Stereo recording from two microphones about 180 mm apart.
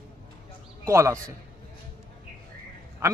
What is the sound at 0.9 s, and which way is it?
Speech, 15° right (ahead or behind).